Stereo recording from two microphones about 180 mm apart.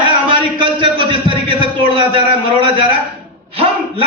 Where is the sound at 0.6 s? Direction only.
30° right (ahead or behind).